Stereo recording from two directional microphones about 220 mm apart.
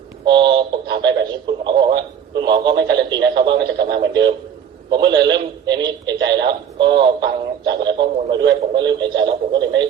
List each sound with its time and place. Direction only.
0.3 s a man's voice: 20° right (ahead or behind)